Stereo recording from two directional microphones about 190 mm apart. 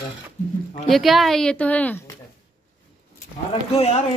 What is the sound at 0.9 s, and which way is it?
Speech, centre (ahead or behind).